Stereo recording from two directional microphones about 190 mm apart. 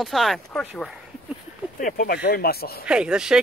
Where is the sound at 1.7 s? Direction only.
45° left (ahead or behind).